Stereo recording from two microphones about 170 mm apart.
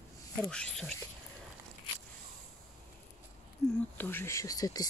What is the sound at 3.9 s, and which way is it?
Speech, 10° left (ahead or behind).